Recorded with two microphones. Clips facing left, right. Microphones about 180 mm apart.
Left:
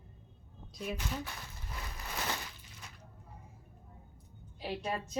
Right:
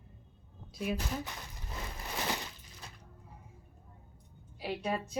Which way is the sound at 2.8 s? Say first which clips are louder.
Right 2 dB; 35° right (ahead or behind).